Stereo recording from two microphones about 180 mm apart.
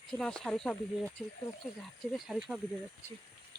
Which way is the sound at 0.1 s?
5° left (ahead or behind).